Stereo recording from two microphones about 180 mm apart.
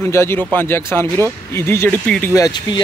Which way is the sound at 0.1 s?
15° left (ahead or behind).